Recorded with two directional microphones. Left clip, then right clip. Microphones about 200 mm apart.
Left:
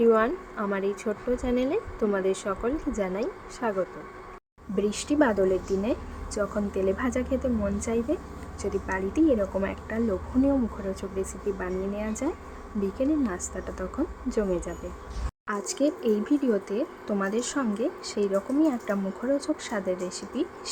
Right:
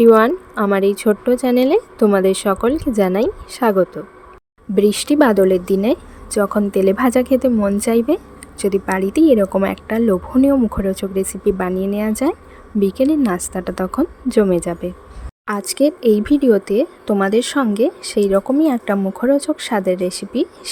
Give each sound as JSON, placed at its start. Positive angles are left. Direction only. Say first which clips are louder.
{"t": 0.0, "sound": "speech", "louder": "right 11 dB", "side_deg": -50}